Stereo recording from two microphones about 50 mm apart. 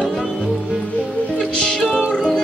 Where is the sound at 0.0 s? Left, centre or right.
Centre.